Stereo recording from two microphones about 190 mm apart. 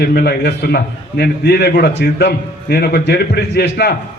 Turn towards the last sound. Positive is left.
turn(degrees=60)  # may be behind; listen again after turning